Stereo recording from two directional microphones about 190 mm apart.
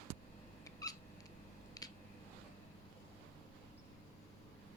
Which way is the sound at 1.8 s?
20° left (ahead or behind).